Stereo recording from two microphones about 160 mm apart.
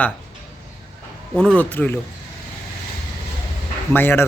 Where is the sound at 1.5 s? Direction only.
10° left (ahead or behind).